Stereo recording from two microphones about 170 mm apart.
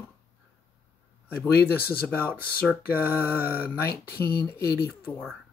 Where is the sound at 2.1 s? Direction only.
10° left (ahead or behind).